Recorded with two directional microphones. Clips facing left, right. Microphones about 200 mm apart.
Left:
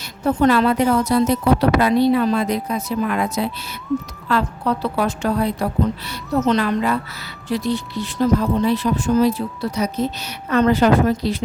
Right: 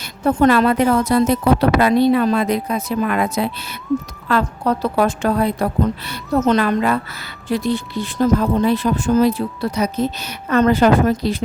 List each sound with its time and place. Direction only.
0.0 s a woman's voice: 55° right (ahead or behind)